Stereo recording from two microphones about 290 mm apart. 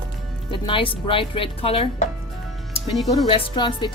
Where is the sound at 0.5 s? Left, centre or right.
Centre.